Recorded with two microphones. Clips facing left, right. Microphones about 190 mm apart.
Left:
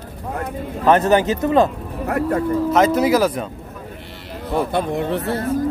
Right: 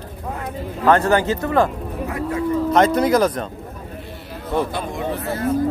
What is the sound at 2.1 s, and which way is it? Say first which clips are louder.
Speech: left 5 dB; 60° left (ahead or behind).